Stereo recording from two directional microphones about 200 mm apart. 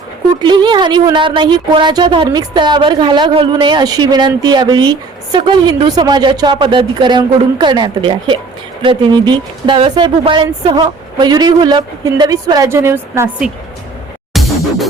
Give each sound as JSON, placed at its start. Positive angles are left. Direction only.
{"t": 0.4, "sound": "a woman's voice", "side_deg": -20}
{"t": 14.3, "sound": "music", "side_deg": 0}